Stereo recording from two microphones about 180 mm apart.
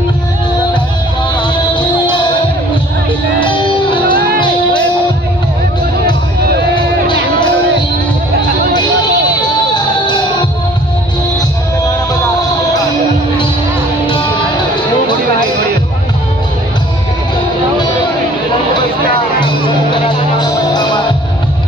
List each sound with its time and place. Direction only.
1.7 s music: 25° left (ahead or behind)
3.4 s music: 25° left (ahead or behind)
8.7 s a sound: 25° left (ahead or behind)
10.0 s music: 25° left (ahead or behind)
20.1 s music: 25° left (ahead or behind)